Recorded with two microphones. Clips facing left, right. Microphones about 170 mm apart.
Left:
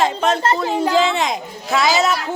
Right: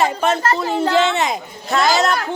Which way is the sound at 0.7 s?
Centre (ahead or behind).